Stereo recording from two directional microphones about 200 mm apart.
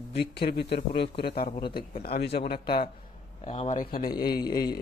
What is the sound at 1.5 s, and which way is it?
Speech, 25° left (ahead or behind).